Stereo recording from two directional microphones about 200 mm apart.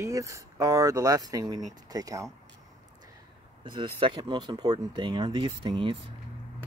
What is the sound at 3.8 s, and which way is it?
Speech, 25° right (ahead or behind).